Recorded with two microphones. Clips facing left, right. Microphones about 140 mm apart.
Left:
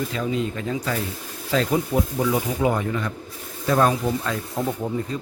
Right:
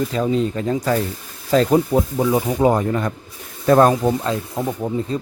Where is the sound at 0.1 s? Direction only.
35° right (ahead or behind).